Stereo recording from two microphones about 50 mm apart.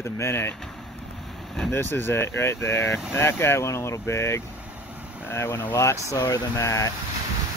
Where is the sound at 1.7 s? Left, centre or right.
Left.